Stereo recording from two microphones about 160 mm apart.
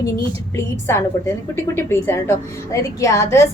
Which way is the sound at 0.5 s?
15° left (ahead or behind).